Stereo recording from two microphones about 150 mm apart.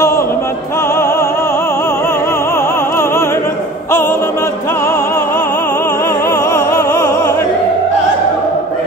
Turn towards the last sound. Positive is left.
turn(degrees=15)  # may be behind; listen again after turning